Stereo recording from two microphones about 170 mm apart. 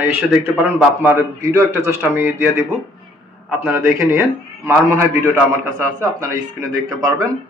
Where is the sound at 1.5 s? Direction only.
15° left (ahead or behind).